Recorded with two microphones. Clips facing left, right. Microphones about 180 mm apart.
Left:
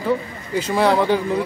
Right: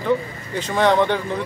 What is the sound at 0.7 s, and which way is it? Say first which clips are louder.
Speech: even; 5° left (ahead or behind).